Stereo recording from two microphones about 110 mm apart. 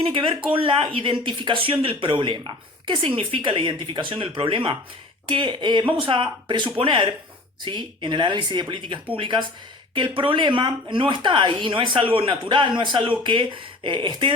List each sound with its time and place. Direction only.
0.0 s speech: 50° right (ahead or behind)